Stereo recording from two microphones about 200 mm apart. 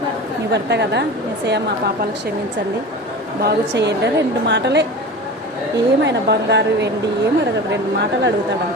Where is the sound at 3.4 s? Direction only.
55° right (ahead or behind).